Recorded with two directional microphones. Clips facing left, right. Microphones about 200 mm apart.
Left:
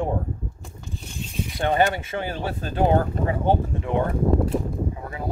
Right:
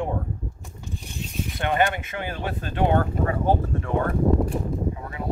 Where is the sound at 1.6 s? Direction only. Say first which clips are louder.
Left 2 dB; 30° left (ahead or behind).